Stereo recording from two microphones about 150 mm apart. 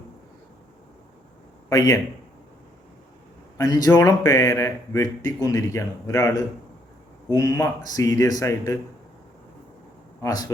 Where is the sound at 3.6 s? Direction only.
25° left (ahead or behind).